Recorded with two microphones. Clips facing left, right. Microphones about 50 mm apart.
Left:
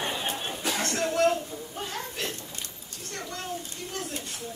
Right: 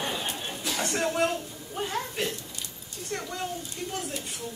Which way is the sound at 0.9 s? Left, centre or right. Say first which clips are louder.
Left 2 dB; centre.